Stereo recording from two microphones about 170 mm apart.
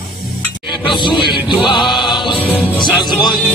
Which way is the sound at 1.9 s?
25° left (ahead or behind).